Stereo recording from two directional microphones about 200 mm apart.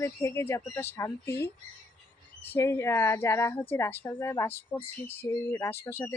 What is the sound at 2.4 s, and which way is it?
A woman's voice, 10° left (ahead or behind).